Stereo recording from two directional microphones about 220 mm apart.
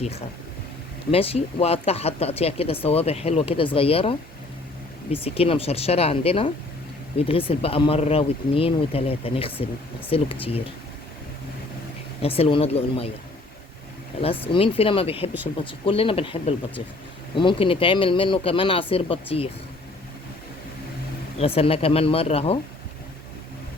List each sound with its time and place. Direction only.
0.0 s speech: 30° left (ahead or behind)
12.2 s speech: 25° left (ahead or behind)
14.2 s speech: 25° left (ahead or behind)
21.3 s speech: 25° left (ahead or behind)